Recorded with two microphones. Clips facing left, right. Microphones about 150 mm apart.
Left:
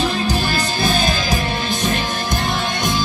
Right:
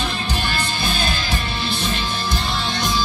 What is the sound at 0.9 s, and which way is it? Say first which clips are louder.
Music: left 5 dB; 45° left (ahead or behind).